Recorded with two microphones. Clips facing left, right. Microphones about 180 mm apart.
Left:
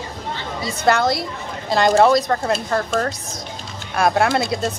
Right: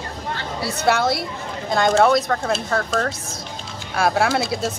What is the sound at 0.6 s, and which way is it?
Speech, 65° right (ahead or behind).